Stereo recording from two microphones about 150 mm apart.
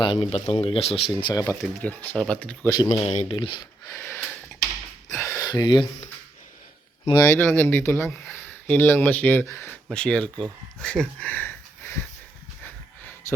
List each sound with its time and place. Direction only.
0.0 s speech: 35° left (ahead or behind)
1.8 s speech: 10° left (ahead or behind)
2.9 s speech: 45° left (ahead or behind)
3.3 s speech: 30° left (ahead or behind)
3.9 s a sound: 15° left (ahead or behind)
7.0 s speech: 20° left (ahead or behind)
13.2 s a sound: 20° left (ahead or behind)